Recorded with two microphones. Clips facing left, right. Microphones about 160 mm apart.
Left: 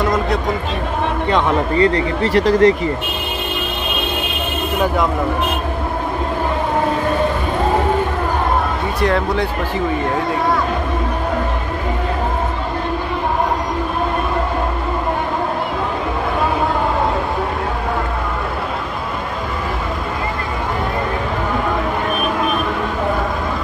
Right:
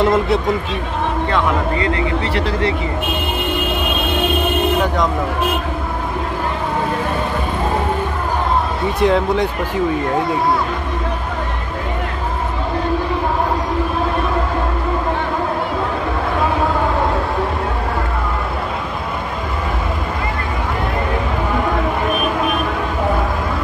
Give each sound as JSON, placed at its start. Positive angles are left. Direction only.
{"t": 1.8, "sound": "speech", "side_deg": 35}
{"t": 9.0, "sound": "speech", "side_deg": -15}